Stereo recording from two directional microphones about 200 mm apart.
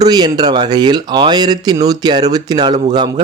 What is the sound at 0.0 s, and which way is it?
Speech, 20° right (ahead or behind).